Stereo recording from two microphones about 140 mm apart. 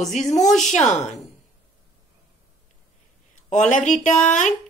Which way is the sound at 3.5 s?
60° left (ahead or behind).